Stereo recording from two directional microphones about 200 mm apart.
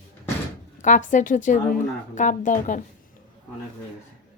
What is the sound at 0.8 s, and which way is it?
A woman's voice, 40° left (ahead or behind).